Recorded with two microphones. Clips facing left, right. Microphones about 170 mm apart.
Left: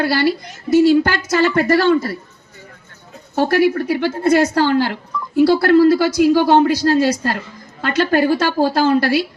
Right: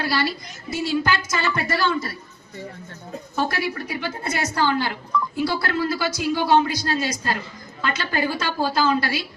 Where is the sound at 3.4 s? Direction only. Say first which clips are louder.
Left 10 dB; 60° left (ahead or behind).